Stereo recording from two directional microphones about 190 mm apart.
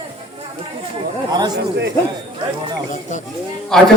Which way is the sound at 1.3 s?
20° right (ahead or behind).